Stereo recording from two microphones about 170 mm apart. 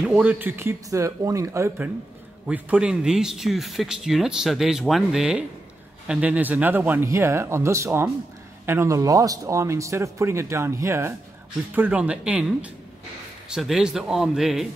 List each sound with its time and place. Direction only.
0.1 s a man's voice: 10° right (ahead or behind)